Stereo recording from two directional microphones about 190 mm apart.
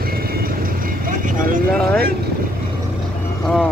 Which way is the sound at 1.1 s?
45° right (ahead or behind).